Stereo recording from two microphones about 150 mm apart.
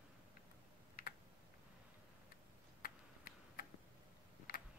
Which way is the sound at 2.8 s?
70° left (ahead or behind).